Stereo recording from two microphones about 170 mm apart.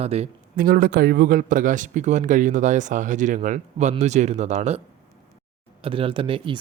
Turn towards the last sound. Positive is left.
turn(degrees=-30)  # may be behind; listen again after turning